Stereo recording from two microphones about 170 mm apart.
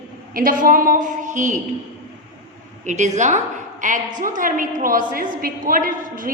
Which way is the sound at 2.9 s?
45° right (ahead or behind).